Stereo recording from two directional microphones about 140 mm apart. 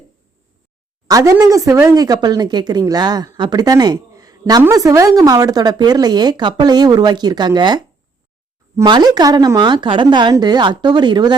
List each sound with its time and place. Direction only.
1.0 s speech: 25° right (ahead or behind)